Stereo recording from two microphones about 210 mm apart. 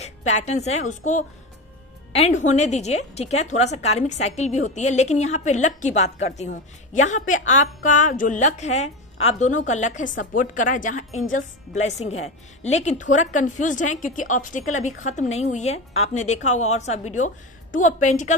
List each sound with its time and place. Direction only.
0.0 s a woman's voice: 35° left (ahead or behind)